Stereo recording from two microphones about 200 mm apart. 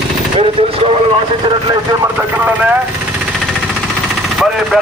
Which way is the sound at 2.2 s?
10° right (ahead or behind).